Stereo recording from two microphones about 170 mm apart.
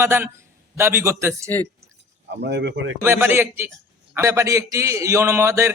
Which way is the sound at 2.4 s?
80° right.